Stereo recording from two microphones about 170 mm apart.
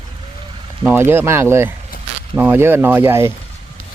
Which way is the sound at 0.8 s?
15° right (ahead or behind).